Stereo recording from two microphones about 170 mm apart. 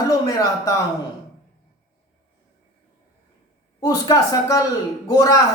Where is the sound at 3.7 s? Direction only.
20° left (ahead or behind).